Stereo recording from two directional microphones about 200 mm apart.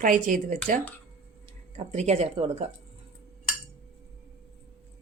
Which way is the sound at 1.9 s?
35° right (ahead or behind).